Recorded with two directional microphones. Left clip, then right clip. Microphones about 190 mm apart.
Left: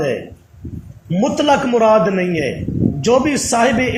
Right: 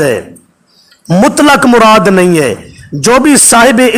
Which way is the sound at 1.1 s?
45° right (ahead or behind).